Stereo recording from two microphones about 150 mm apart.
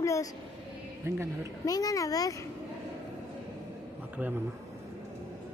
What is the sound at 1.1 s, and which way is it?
Speech, 15° right (ahead or behind).